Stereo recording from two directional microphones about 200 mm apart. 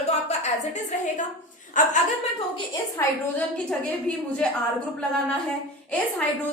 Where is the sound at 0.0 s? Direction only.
35° left (ahead or behind).